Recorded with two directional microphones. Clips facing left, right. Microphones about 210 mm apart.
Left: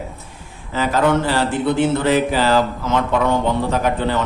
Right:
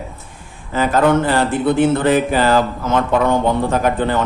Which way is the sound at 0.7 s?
50° right (ahead or behind).